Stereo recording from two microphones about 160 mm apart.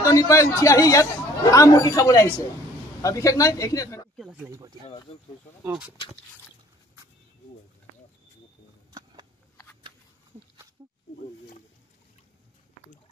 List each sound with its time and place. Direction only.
0.0 s a man's voice: 20° left (ahead or behind)
4.2 s speech: 5° right (ahead or behind)
4.5 s speech: 25° right (ahead or behind)
5.6 s speech: 5° right (ahead or behind)